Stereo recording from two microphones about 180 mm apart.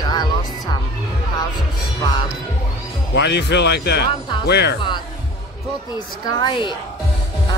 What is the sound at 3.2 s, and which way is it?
A man's voice, 75° left (ahead or behind).